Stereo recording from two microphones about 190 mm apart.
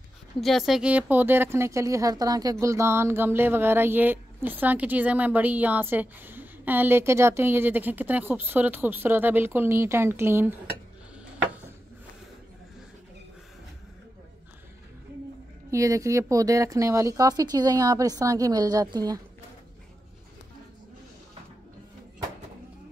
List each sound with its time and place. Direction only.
0.4 s speech: centre (ahead or behind)
15.7 s speech: 15° right (ahead or behind)